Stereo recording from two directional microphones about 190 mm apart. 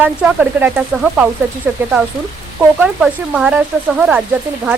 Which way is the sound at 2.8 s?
5° right (ahead or behind).